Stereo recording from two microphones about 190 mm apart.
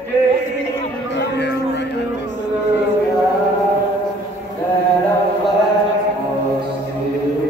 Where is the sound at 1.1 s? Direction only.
65° left (ahead or behind).